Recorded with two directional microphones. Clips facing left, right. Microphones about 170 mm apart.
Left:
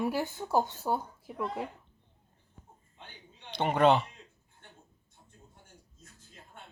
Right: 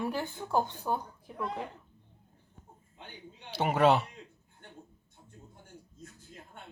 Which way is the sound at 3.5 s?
5° right (ahead or behind).